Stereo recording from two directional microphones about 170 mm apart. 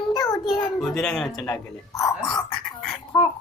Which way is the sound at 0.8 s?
5° left (ahead or behind).